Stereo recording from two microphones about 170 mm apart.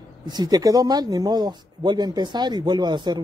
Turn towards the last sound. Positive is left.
turn(degrees=-25)  # may be behind; listen again after turning